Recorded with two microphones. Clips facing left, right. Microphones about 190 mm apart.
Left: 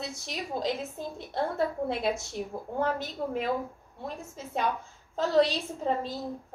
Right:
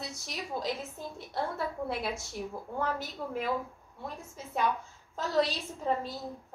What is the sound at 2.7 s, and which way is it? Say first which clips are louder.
Speech: left 5 dB; 25° left (ahead or behind).